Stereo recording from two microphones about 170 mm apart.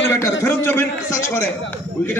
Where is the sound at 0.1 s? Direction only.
15° left (ahead or behind).